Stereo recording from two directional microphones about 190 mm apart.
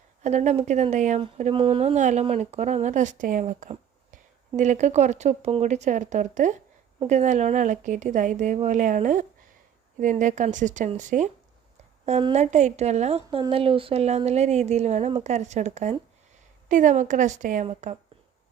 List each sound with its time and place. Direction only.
0.2 s speech: 35° right (ahead or behind)